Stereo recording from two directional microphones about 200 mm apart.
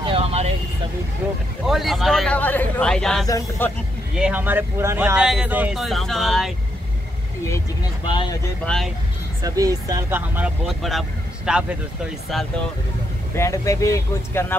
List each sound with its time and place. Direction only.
0.0 s vehicle: 30° right (ahead or behind)
1.2 s speech: 5° right (ahead or behind)
3.3 s speech: 15° left (ahead or behind)
4.2 s speech: 10° right (ahead or behind)
7.4 s speech: 15° left (ahead or behind)
8.6 s speech: centre (ahead or behind)
9.4 s speech: 20° right (ahead or behind); by 12.6 s centre (ahead or behind)
13.4 s speech: 15° left (ahead or behind)